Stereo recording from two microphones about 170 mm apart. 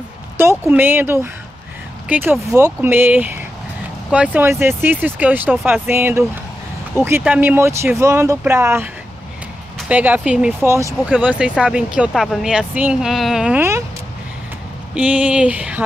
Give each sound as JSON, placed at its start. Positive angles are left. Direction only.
{"t": 0.4, "sound": "speech", "side_deg": -10}
{"t": 15.0, "sound": "speech", "side_deg": -5}